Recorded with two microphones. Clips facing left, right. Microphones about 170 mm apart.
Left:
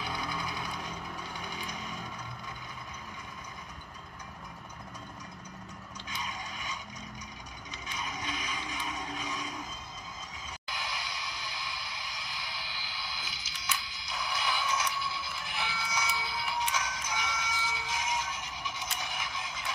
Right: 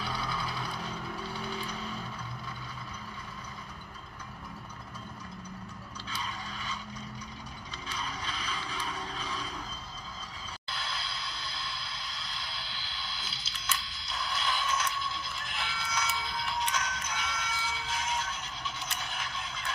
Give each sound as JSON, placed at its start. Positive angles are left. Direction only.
{"t": 0.0, "sound": "vehicle", "side_deg": 15}
{"t": 6.0, "sound": "vehicle", "side_deg": 15}
{"t": 7.9, "sound": "vehicle", "side_deg": 15}
{"t": 10.7, "sound": "a sound", "side_deg": 15}